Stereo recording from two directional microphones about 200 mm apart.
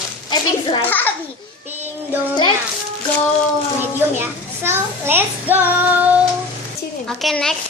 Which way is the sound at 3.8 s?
10° right (ahead or behind).